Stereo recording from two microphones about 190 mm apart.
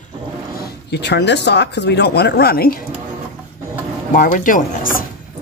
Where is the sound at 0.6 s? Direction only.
65° left (ahead or behind).